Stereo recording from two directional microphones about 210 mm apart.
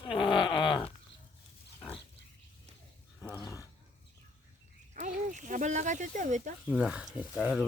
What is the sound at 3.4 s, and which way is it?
Dog, 15° left (ahead or behind).